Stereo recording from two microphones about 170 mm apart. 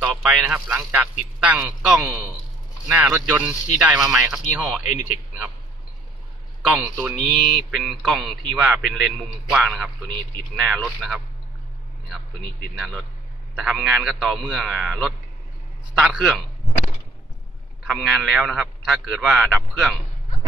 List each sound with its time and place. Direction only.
0.0 s a man's voice: 10° right (ahead or behind)
4.8 s speech: 45° left (ahead or behind)
6.6 s a man's voice: 5° right (ahead or behind)
12.7 s a man's voice: centre (ahead or behind)
17.9 s a man's voice: centre (ahead or behind)